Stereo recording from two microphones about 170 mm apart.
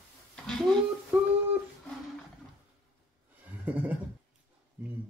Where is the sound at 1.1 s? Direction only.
5° right (ahead or behind).